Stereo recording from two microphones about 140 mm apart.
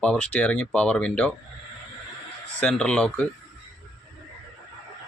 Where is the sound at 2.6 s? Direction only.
5° left (ahead or behind).